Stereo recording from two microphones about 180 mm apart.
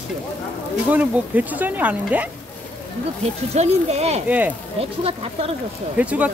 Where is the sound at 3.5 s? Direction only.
35° right (ahead or behind).